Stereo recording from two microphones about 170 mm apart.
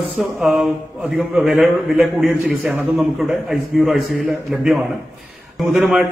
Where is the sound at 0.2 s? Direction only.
Centre (ahead or behind).